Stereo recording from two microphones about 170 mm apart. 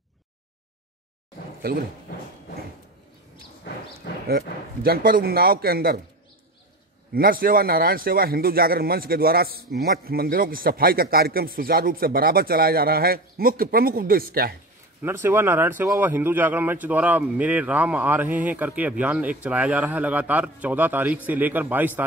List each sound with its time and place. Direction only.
1.6 s speech: 60° right (ahead or behind)
4.3 s speech: 65° right (ahead or behind)
7.2 s speech: 60° right (ahead or behind)
15.0 s a man's voice: 15° right (ahead or behind)